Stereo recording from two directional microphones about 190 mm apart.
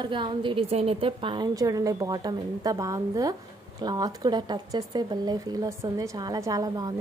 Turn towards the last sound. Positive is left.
turn(degrees=-20)  # may be behind; listen again after turning